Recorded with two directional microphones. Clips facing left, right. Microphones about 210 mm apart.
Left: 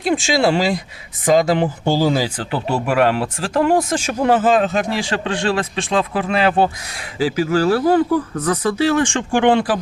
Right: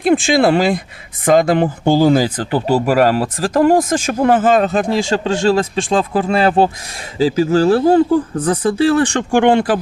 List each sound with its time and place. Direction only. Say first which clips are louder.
0.0 s speech: right 4 dB; 55° right (ahead or behind)
7.6 s speech: right 3 dB; 25° right (ahead or behind); by 9.7 s 50° right (ahead or behind)